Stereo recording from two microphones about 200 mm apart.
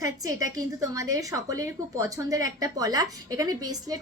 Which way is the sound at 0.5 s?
15° right (ahead or behind).